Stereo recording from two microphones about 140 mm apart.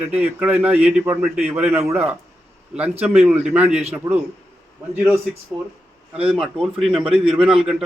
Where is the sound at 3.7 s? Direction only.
50° right (ahead or behind).